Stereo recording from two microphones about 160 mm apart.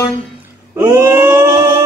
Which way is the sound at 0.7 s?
15° right (ahead or behind).